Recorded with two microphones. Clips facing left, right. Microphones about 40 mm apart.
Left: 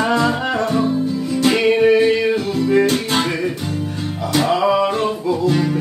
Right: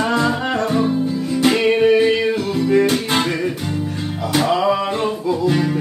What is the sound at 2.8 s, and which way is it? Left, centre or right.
Music, right.